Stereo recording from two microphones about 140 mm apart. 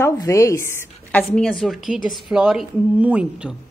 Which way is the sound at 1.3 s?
5° left (ahead or behind).